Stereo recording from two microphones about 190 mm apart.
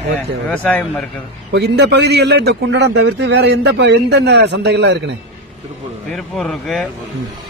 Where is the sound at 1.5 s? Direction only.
60° right (ahead or behind).